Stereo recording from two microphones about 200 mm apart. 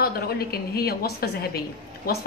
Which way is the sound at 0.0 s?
50° left (ahead or behind).